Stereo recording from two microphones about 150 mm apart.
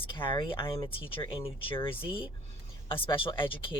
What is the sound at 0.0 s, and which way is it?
Speech, 35° left (ahead or behind).